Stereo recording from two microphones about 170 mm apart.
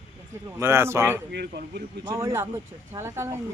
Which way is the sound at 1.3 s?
75° right (ahead or behind).